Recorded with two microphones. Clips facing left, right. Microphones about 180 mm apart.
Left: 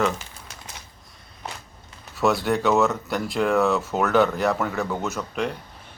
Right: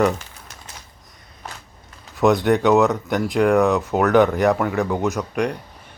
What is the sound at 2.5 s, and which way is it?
Speech, centre (ahead or behind).